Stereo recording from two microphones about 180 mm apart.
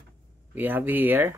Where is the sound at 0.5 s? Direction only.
10° right (ahead or behind).